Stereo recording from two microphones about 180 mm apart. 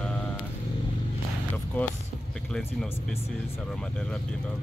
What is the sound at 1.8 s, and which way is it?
Speech, 10° left (ahead or behind).